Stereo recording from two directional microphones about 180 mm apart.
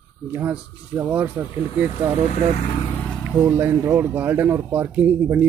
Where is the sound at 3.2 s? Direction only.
10° right (ahead or behind).